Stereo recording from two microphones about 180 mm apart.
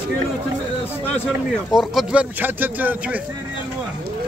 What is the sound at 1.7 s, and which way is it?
Speech, centre (ahead or behind).